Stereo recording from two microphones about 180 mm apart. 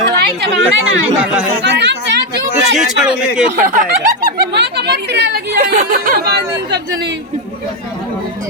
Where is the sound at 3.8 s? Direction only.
60° right (ahead or behind).